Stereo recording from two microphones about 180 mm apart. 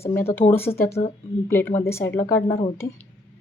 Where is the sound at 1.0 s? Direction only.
25° left (ahead or behind).